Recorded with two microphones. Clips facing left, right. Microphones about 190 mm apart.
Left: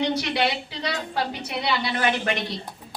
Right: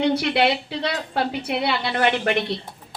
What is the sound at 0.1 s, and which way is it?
A woman's voice, 60° right (ahead or behind).